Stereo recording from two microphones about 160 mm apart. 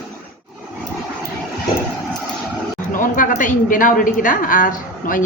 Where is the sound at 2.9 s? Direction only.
55° left (ahead or behind).